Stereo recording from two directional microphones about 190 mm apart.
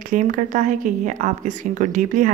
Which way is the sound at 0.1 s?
45° right (ahead or behind).